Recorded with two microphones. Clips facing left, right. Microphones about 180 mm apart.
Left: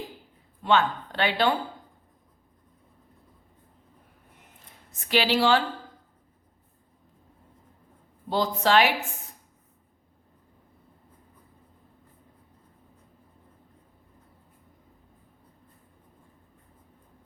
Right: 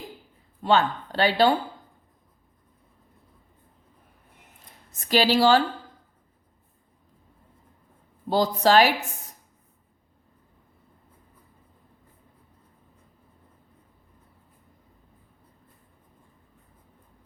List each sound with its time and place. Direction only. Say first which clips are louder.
0.6 s speech: right 1 dB; 35° right (ahead or behind)
5.0 s speech: right 3 dB; 40° right (ahead or behind)
8.3 s speech: right 3 dB; 40° right (ahead or behind)